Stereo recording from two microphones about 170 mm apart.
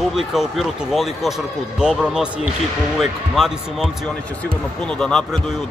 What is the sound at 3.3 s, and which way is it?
Speech, centre (ahead or behind).